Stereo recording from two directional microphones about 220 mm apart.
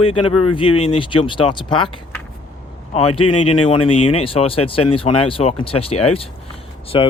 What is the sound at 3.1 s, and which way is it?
Speech, 90° left.